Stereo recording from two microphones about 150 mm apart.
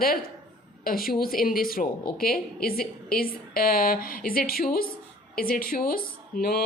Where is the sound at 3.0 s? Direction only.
80° left.